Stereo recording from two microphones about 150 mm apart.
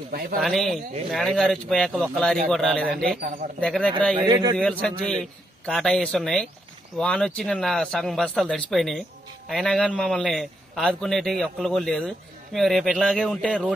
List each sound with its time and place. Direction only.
0.1 s a man's voice: 75° right (ahead or behind)
0.4 s a man's voice: centre (ahead or behind)
3.2 s speech: 60° right (ahead or behind)
3.6 s speech: 10° left (ahead or behind)
4.2 s a man's voice: 25° right (ahead or behind)
4.6 s a man's voice: 5° left (ahead or behind)